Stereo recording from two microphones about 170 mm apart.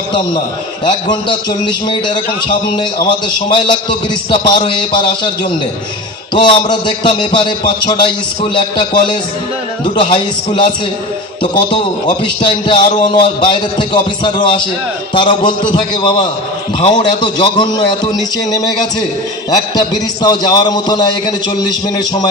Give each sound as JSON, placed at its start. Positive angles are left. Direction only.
{"t": 1.9, "sound": "a man's voice", "side_deg": 25}
{"t": 4.6, "sound": "a man's voice", "side_deg": 25}